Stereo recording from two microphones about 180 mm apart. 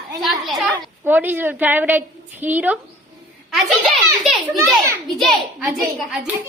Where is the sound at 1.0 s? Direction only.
10° right (ahead or behind).